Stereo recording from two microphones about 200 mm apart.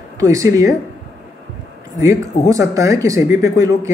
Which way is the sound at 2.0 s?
15° right (ahead or behind).